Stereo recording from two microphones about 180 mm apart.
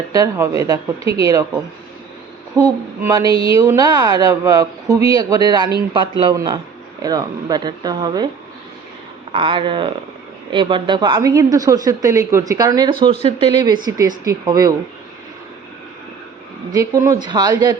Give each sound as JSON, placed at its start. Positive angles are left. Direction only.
{"t": 0.1, "sound": "a woman's voice", "side_deg": -20}
{"t": 2.6, "sound": "a woman's voice", "side_deg": -20}
{"t": 9.3, "sound": "a woman's voice", "side_deg": -30}
{"t": 16.7, "sound": "a woman's voice", "side_deg": -20}